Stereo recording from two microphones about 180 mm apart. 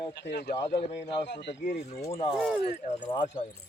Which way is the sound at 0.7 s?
35° left (ahead or behind).